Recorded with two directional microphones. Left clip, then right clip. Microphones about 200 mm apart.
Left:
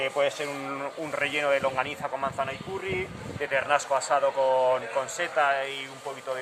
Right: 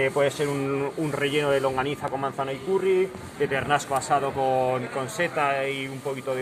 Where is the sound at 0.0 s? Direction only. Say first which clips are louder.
Right 3 dB; 15° left (ahead or behind).